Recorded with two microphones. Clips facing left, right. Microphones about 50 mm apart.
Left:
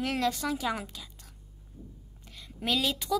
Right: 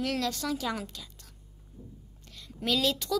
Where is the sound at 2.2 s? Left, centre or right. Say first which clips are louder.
Even; centre.